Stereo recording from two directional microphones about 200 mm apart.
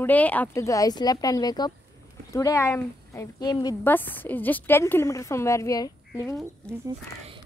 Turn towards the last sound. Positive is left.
turn(degrees=15)  # may be behind; listen again after turning